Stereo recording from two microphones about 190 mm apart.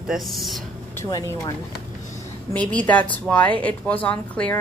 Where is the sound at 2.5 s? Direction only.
5° left (ahead or behind).